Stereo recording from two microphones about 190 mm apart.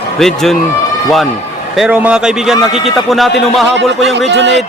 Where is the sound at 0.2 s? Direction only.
Centre (ahead or behind).